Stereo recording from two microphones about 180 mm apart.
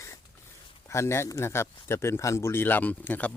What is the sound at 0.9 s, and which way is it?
A man's voice, 15° left (ahead or behind).